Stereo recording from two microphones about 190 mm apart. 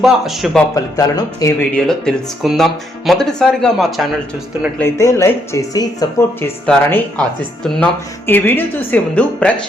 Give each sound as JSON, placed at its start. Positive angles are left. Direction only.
{"t": 0.0, "sound": "speech", "side_deg": 0}
{"t": 0.9, "sound": "speech", "side_deg": 20}
{"t": 1.7, "sound": "speech", "side_deg": 5}
{"t": 4.8, "sound": "speech", "side_deg": 15}
{"t": 6.7, "sound": "speech", "side_deg": 5}